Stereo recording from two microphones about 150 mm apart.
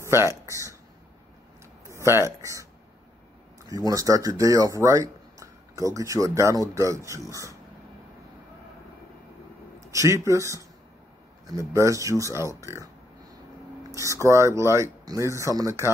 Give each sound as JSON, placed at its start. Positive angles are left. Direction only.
{"t": 0.0, "sound": "speech", "side_deg": -20}
{"t": 1.9, "sound": "speech", "side_deg": -15}
{"t": 3.6, "sound": "speech", "side_deg": -25}
{"t": 9.8, "sound": "speech", "side_deg": -20}
{"t": 14.2, "sound": "speech", "side_deg": -20}